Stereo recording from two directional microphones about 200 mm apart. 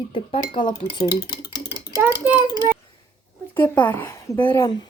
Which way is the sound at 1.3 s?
55° left (ahead or behind).